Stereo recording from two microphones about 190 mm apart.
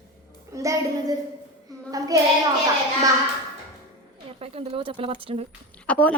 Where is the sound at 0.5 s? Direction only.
15° right (ahead or behind).